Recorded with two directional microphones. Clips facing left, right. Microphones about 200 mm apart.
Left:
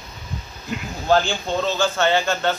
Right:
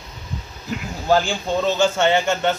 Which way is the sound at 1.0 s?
15° right (ahead or behind).